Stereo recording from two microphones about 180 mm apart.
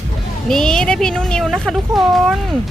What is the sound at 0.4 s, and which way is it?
Speech, 5° left (ahead or behind).